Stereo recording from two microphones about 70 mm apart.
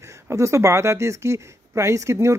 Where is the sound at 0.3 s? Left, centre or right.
Right.